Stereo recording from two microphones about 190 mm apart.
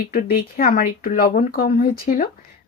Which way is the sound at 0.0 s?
50° left (ahead or behind).